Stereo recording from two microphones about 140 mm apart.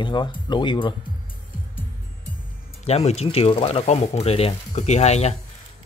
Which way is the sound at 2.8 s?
50° left (ahead or behind).